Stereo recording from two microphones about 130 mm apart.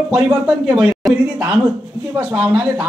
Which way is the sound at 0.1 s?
5° right (ahead or behind).